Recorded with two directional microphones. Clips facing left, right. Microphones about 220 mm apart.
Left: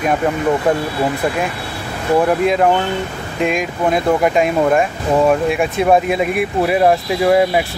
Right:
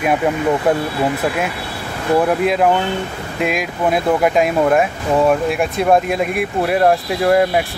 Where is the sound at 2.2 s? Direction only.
Centre (ahead or behind).